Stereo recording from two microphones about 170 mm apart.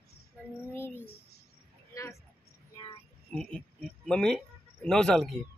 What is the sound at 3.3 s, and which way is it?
Speech, 5° left (ahead or behind).